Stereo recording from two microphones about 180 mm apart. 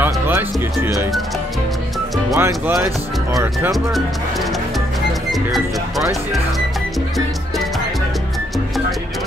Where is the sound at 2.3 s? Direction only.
15° right (ahead or behind).